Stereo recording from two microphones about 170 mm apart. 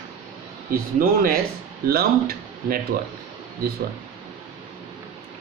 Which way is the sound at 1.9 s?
65° right (ahead or behind).